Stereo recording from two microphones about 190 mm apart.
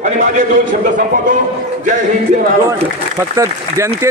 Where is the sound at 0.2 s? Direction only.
40° right (ahead or behind).